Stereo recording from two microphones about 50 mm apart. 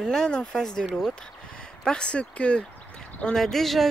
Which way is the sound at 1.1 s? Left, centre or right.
Centre.